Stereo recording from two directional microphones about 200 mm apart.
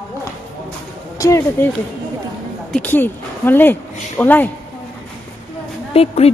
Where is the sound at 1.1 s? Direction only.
15° left (ahead or behind).